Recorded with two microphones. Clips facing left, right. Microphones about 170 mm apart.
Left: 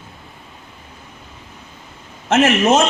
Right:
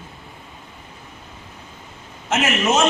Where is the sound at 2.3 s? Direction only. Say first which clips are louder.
Left 6 dB; 55° left (ahead or behind).